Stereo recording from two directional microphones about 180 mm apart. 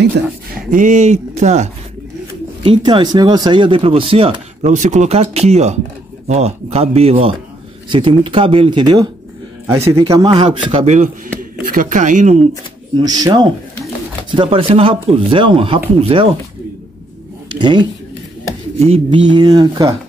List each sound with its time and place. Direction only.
0.7 s speech: 45° right (ahead or behind)
2.6 s a man's voice: 25° right (ahead or behind)
10.3 s speech: 30° right (ahead or behind)
11.6 s speech: 50° right (ahead or behind)
13.0 s speech: 20° right (ahead or behind)
17.5 s a sound: 25° right (ahead or behind)
18.9 s speech: 25° right (ahead or behind)